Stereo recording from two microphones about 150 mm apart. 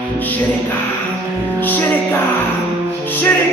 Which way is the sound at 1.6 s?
10° left (ahead or behind).